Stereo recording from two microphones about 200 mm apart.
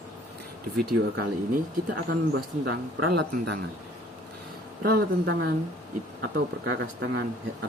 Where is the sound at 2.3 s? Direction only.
55° right (ahead or behind).